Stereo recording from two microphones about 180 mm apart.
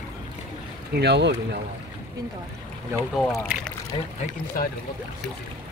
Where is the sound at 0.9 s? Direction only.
70° right (ahead or behind).